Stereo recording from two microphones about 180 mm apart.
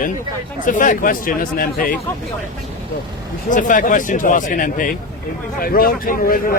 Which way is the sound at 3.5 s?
45° left (ahead or behind).